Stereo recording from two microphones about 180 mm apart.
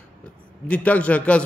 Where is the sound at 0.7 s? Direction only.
10° left (ahead or behind).